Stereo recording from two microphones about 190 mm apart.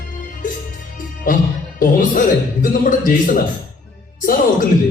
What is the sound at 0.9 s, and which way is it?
Music, 45° left (ahead or behind).